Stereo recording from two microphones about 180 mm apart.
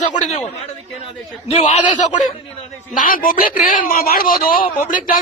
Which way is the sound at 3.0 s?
50° left (ahead or behind).